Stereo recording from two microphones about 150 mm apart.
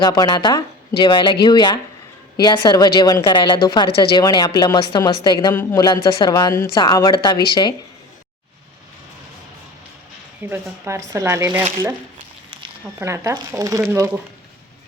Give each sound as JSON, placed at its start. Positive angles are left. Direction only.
{"t": 0.0, "sound": "speech", "side_deg": 25}
{"t": 10.4, "sound": "speech", "side_deg": -15}
{"t": 13.0, "sound": "speech", "side_deg": -20}